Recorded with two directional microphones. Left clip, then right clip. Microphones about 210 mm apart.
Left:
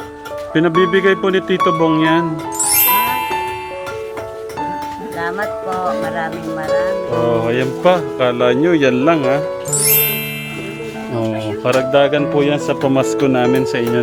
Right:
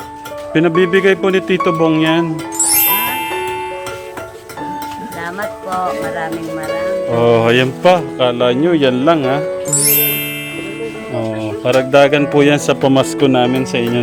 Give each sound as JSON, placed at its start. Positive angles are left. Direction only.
{"t": 0.5, "sound": "a man's voice", "side_deg": -10}
{"t": 2.7, "sound": "music", "side_deg": 0}
{"t": 7.3, "sound": "music", "side_deg": -40}
{"t": 7.9, "sound": "a man's voice", "side_deg": -5}
{"t": 9.8, "sound": "music", "side_deg": 0}
{"t": 11.6, "sound": "music", "side_deg": -15}
{"t": 11.9, "sound": "speech", "side_deg": -25}
{"t": 12.6, "sound": "a man's voice", "side_deg": -15}